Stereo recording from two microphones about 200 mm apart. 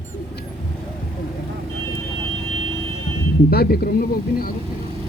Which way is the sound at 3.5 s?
50° left (ahead or behind).